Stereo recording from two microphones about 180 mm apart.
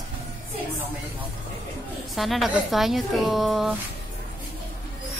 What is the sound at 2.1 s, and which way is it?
A woman's voice, centre (ahead or behind).